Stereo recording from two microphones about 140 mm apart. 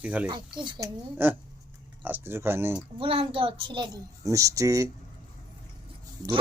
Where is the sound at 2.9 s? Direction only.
40° right (ahead or behind).